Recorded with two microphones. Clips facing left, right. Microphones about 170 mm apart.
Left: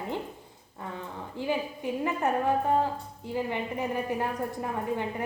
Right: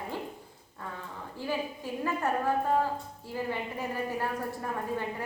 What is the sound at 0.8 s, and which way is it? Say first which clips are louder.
A woman's voice: left 3 dB; 20° left (ahead or behind).